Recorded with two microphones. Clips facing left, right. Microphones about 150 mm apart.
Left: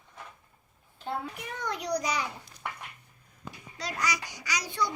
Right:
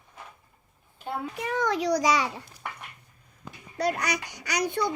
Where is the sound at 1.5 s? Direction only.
90° right.